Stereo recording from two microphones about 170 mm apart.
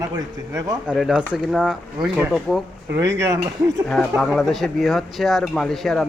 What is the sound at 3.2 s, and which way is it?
Speech, 20° right (ahead or behind).